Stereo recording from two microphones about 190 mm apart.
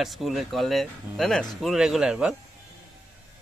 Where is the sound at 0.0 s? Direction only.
Centre (ahead or behind).